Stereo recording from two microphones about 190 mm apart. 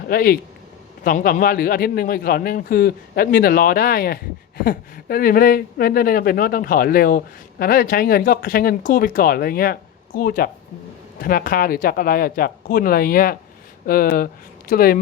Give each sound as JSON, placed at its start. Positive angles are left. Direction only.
{"t": 0.1, "sound": "a man's voice", "side_deg": 50}